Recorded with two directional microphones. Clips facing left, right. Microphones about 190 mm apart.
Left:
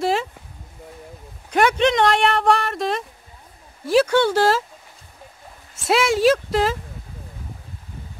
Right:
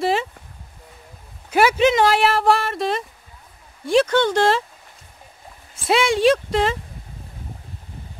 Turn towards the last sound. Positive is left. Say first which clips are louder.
# even
turn(degrees=0)  # may be behind; listen again after turning